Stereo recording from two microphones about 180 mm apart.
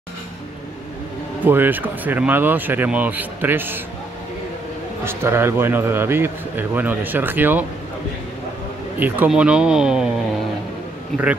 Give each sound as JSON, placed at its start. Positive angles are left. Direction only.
{"t": 1.4, "sound": "speech", "side_deg": -10}
{"t": 5.0, "sound": "speech", "side_deg": -15}
{"t": 9.0, "sound": "speech", "side_deg": -10}